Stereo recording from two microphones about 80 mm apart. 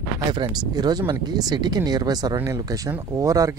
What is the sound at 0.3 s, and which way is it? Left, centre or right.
Speech, right.